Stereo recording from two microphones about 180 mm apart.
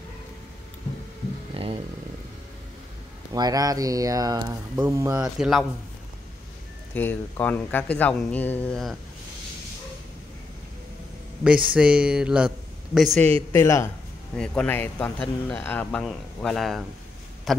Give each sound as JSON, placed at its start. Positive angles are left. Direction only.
{"t": 1.5, "sound": "a sound", "side_deg": -30}
{"t": 3.3, "sound": "speech", "side_deg": -20}
{"t": 5.2, "sound": "a man's voice", "side_deg": -5}
{"t": 6.9, "sound": "speech", "side_deg": 10}
{"t": 11.4, "sound": "a man's voice", "side_deg": -5}
{"t": 13.5, "sound": "speech", "side_deg": 15}
{"t": 14.3, "sound": "speech", "side_deg": 5}